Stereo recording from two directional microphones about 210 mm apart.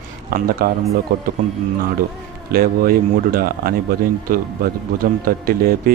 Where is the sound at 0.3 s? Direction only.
45° right (ahead or behind).